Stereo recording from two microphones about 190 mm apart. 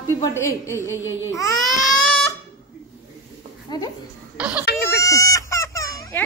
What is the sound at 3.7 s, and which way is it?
Speech, 20° left (ahead or behind).